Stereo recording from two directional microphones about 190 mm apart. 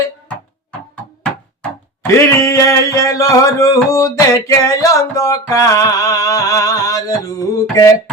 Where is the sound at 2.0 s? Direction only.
15° left (ahead or behind).